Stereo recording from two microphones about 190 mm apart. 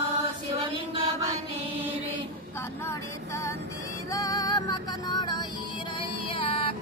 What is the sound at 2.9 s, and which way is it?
Music, 15° left (ahead or behind).